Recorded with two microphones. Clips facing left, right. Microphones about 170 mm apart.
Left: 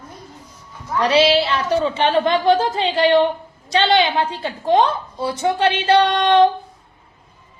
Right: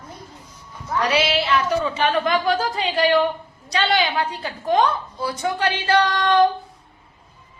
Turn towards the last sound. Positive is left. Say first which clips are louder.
# left 3 dB
turn(degrees=25)  # may be behind; listen again after turning